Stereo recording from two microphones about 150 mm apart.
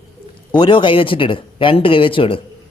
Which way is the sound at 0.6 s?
35° left (ahead or behind).